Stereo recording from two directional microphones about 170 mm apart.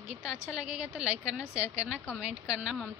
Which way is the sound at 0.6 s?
5° right (ahead or behind).